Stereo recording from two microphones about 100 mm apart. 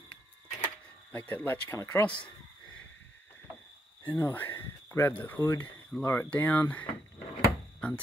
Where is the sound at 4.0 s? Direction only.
20° left (ahead or behind).